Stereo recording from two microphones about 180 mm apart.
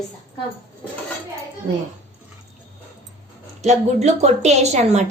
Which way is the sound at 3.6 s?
40° right (ahead or behind).